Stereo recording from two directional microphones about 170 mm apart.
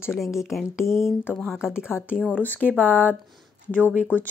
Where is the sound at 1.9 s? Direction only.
10° left (ahead or behind).